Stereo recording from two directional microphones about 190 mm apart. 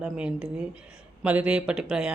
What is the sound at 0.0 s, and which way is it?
Speech, 5° right (ahead or behind).